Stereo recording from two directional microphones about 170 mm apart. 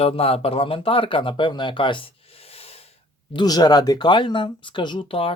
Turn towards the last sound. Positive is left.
turn(degrees=30)  # may be behind; listen again after turning